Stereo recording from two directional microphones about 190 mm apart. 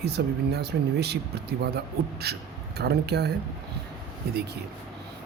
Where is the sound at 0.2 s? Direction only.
60° right (ahead or behind).